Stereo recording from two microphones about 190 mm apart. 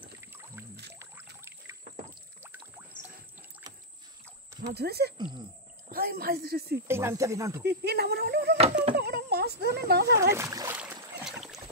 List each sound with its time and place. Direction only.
0.2 s rowboat: 15° right (ahead or behind)
2.4 s pour: 10° right (ahead or behind)
4.7 s speech: 55° right (ahead or behind)
5.1 s speech: 25° right (ahead or behind)
5.9 s speech: 50° right (ahead or behind)
6.9 s music: 15° right (ahead or behind)
7.6 s speech: 60° right (ahead or behind)
8.9 s a sound: 55° right (ahead or behind)
10.3 s speech: 15° right (ahead or behind)
10.8 s boat: 10° right (ahead or behind)